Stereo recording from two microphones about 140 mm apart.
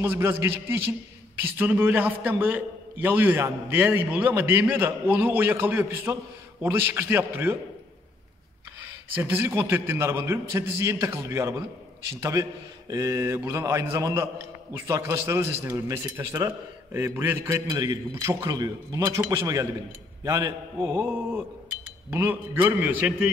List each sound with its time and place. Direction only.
0.0 s a man's voice: 15° right (ahead or behind)
9.1 s a man's voice: 15° right (ahead or behind)
17.6 s a man's voice: 25° right (ahead or behind)